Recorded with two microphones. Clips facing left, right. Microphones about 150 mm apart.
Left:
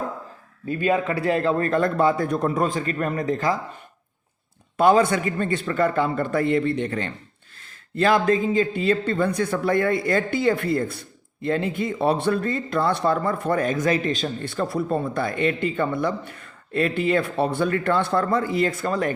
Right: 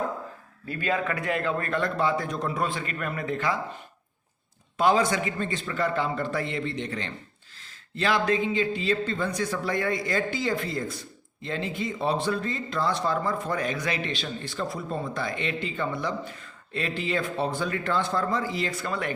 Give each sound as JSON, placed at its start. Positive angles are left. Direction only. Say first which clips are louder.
{"t": 0.7, "sound": "a man's voice", "louder": "left 6 dB", "side_deg": 25}
{"t": 4.8, "sound": "a man's voice", "louder": "left 5 dB", "side_deg": 55}